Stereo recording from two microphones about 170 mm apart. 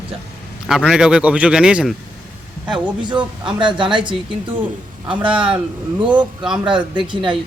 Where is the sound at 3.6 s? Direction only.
30° right (ahead or behind).